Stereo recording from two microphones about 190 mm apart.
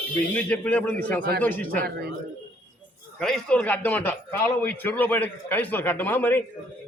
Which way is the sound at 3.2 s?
Centre (ahead or behind).